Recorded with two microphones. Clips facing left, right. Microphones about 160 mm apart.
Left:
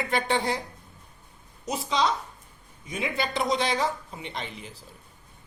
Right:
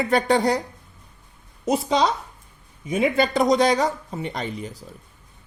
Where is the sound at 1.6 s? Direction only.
50° right (ahead or behind).